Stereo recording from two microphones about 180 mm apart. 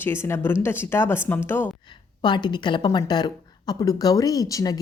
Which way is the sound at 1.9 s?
25° left (ahead or behind).